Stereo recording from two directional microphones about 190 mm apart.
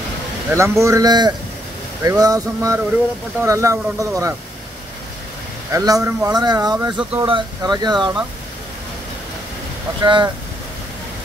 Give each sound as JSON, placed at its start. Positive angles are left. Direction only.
{"t": 0.6, "sound": "speech", "side_deg": -15}
{"t": 5.7, "sound": "speech", "side_deg": -20}
{"t": 7.0, "sound": "speech", "side_deg": -5}
{"t": 7.2, "sound": "speech", "side_deg": -25}
{"t": 10.0, "sound": "speech", "side_deg": -25}